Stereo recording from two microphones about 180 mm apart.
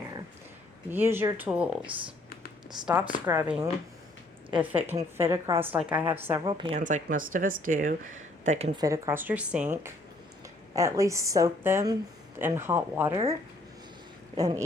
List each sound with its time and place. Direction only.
0.9 s a woman's voice: 10° right (ahead or behind)
3.2 s a woman's voice: 10° right (ahead or behind)
6.5 s speech: 25° right (ahead or behind)
6.7 s speech: 45° right (ahead or behind)
8.8 s a woman's voice: 15° right (ahead or behind)
10.8 s a woman's voice: 20° right (ahead or behind)
14.3 s speech: 20° right (ahead or behind)